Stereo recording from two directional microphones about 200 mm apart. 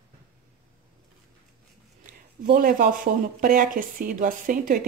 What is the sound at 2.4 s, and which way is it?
Speech, 45° right (ahead or behind).